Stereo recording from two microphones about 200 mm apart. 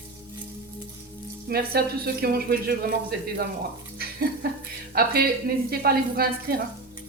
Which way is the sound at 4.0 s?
50° right (ahead or behind).